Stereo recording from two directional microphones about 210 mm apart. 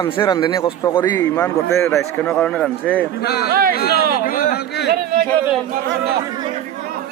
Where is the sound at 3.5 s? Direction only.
45° right (ahead or behind).